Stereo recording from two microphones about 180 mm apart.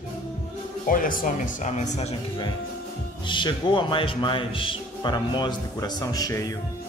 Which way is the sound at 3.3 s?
25° left (ahead or behind).